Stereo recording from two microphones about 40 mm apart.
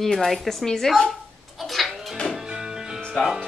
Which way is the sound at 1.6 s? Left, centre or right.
Centre.